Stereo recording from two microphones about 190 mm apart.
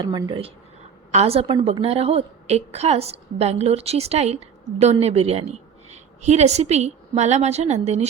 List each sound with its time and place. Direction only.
0.0 s a woman's voice: 25° right (ahead or behind)